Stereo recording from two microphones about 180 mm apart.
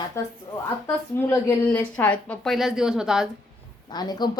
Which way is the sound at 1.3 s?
10° left (ahead or behind).